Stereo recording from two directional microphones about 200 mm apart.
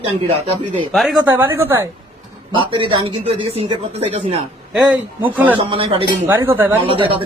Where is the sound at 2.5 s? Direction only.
25° right (ahead or behind).